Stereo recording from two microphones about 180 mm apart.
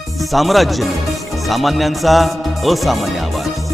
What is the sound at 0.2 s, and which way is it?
Music, centre (ahead or behind).